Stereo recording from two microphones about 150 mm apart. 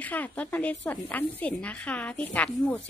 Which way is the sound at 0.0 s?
10° left (ahead or behind).